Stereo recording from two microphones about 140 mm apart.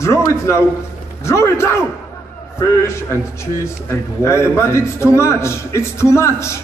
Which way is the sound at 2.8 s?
20° left (ahead or behind).